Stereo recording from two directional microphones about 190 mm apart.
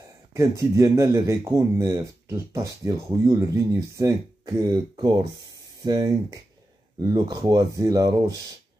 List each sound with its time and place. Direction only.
0.3 s speech: 15° right (ahead or behind)